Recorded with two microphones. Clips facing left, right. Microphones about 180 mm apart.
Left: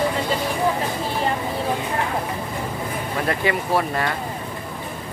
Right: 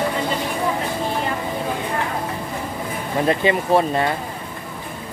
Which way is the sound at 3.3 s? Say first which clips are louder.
Right 5 dB; 25° right (ahead or behind).